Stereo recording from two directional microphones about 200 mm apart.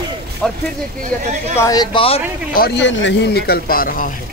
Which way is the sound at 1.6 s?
20° left (ahead or behind).